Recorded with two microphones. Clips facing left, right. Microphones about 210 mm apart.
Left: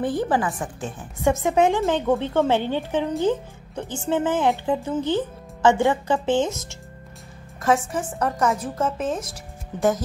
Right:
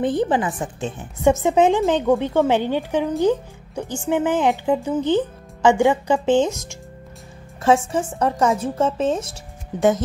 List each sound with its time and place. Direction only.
0.0 s a woman's voice: 20° right (ahead or behind)
7.6 s a woman's voice: 25° right (ahead or behind)